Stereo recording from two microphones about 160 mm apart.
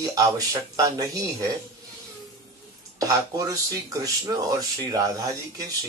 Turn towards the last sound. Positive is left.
turn(degrees=-20)  # may be behind; listen again after turning